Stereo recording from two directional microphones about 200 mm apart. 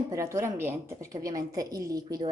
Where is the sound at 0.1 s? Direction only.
15° right (ahead or behind).